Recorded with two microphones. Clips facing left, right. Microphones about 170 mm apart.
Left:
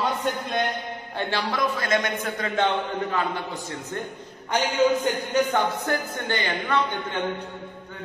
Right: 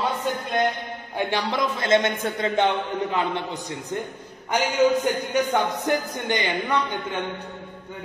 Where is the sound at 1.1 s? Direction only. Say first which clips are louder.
Right 2 dB; 15° right (ahead or behind).